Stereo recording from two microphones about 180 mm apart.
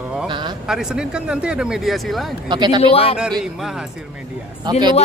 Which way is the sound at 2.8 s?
30° left (ahead or behind).